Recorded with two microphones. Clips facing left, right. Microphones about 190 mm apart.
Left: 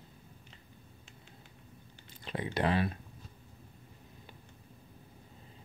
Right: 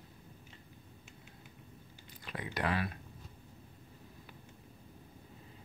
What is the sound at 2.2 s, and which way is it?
Speech, 25° left (ahead or behind).